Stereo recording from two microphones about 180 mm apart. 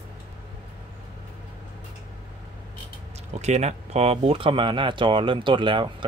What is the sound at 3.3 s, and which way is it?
Speech, 40° right (ahead or behind).